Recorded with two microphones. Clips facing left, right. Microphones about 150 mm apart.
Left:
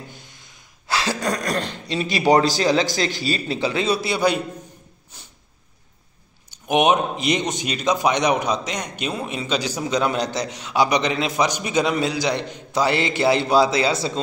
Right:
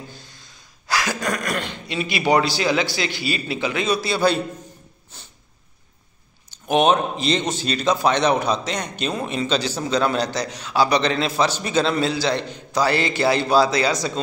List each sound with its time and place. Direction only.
0.1 s speech: 20° left (ahead or behind)
4.1 s a man's voice: 15° left (ahead or behind)
6.5 s a man's voice: 15° left (ahead or behind)